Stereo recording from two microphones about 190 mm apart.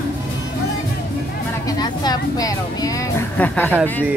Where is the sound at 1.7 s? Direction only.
20° left (ahead or behind).